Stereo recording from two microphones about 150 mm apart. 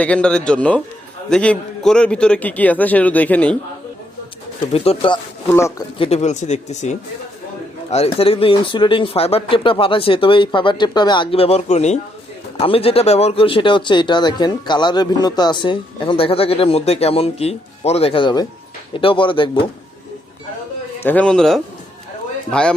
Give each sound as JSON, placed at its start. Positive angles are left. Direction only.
{"t": 0.0, "sound": "a man's voice", "side_deg": 5}
{"t": 4.7, "sound": "speech", "side_deg": 40}
{"t": 5.5, "sound": "speech", "side_deg": 20}
{"t": 6.0, "sound": "speech", "side_deg": 45}
{"t": 21.0, "sound": "a man's voice", "side_deg": 10}